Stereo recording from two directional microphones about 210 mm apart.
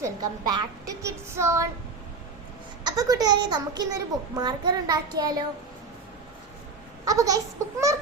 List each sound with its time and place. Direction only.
0.0 s a woman's voice: 15° right (ahead or behind)
2.8 s a child's voice: 15° right (ahead or behind)
7.0 s a woman's voice: 15° right (ahead or behind)